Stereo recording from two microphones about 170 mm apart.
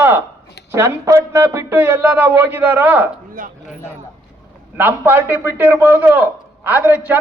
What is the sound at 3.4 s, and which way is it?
Speech, 55° right (ahead or behind).